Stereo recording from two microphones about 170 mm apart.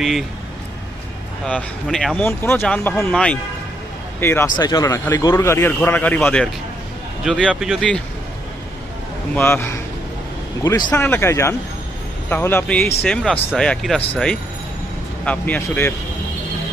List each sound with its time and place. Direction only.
1.4 s speech: 5° left (ahead or behind)
4.6 s speech: 25° left (ahead or behind); by 8.0 s centre (ahead or behind)
9.3 s speech: 15° left (ahead or behind)
10.9 s speech: 10° left (ahead or behind)